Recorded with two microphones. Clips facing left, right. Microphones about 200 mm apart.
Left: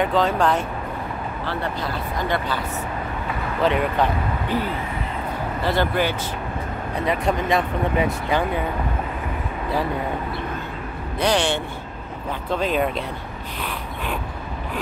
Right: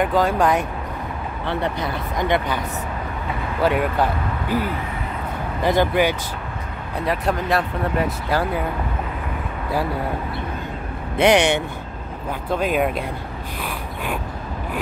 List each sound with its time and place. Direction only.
0.0 s speech: 10° right (ahead or behind)
3.6 s speech: 10° right (ahead or behind)
7.1 s speech: 5° right (ahead or behind)
11.1 s speech: 20° right (ahead or behind)
12.4 s speech: 10° right (ahead or behind)